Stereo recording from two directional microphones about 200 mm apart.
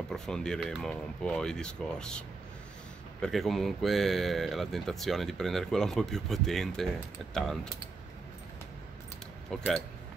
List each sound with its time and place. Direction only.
0.1 s speech: 5° left (ahead or behind)
9.5 s speech: 5° left (ahead or behind)